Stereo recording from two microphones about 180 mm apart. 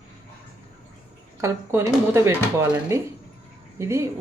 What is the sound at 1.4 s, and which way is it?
Speech, 15° right (ahead or behind).